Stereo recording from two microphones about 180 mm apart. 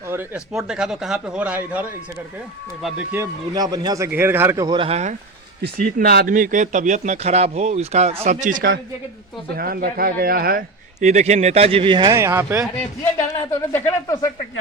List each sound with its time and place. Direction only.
0.1 s speech: 10° right (ahead or behind)
3.5 s speech: 20° right (ahead or behind)
5.6 s speech: 60° right (ahead or behind)
11.0 s speech: 40° right (ahead or behind); by 12.6 s 15° right (ahead or behind)
13.3 s speech: 15° left (ahead or behind)